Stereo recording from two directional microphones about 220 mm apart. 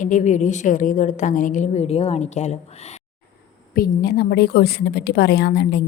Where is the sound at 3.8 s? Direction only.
45° left (ahead or behind).